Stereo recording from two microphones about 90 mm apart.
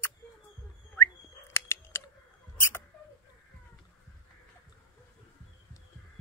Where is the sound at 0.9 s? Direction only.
30° left (ahead or behind).